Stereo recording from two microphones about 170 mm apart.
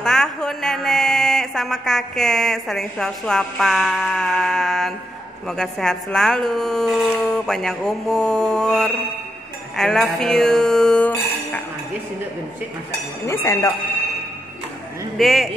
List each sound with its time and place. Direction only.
0.0 s speech: 5° left (ahead or behind)
13.3 s speech: 15° left (ahead or behind)
15.1 s speech: centre (ahead or behind)